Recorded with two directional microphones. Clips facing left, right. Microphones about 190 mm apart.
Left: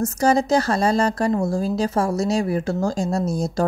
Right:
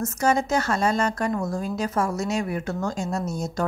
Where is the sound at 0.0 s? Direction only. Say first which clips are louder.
Left 4 dB; 35° left (ahead or behind).